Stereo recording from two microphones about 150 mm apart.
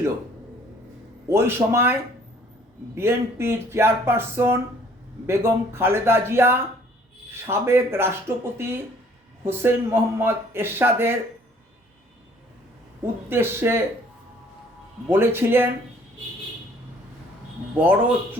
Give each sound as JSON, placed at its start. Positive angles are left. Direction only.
{"t": 1.3, "sound": "a man's voice", "side_deg": -15}
{"t": 13.3, "sound": "a man's voice", "side_deg": -15}
{"t": 15.1, "sound": "a man's voice", "side_deg": -15}
{"t": 17.7, "sound": "a man's voice", "side_deg": -10}